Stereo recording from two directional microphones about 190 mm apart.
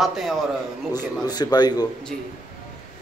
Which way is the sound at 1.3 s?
20° left (ahead or behind).